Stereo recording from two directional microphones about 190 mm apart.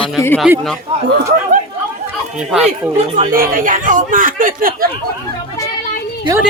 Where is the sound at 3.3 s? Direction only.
45° right (ahead or behind).